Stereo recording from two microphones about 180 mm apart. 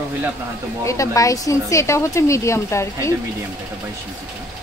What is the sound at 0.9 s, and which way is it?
A woman's voice, 20° left (ahead or behind).